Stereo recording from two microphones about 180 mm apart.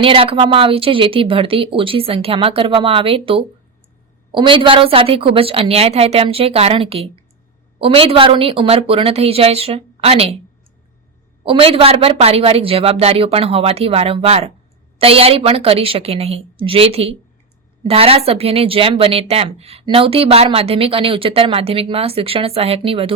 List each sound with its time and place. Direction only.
0.0 s a woman's voice: 30° right (ahead or behind)
11.4 s a woman's voice: 30° right (ahead or behind)